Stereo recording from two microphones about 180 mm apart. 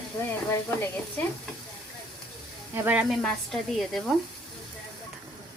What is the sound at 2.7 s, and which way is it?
Speech, 10° right (ahead or behind).